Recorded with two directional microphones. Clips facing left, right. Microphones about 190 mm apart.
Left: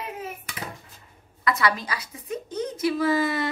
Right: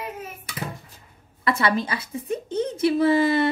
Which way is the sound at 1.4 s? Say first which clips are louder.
Right 2 dB; 30° right (ahead or behind).